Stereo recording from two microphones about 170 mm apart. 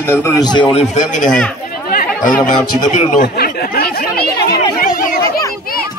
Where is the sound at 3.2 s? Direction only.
65° left (ahead or behind).